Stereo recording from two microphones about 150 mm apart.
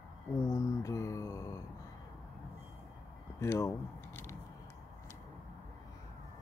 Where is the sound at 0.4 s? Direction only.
20° left (ahead or behind).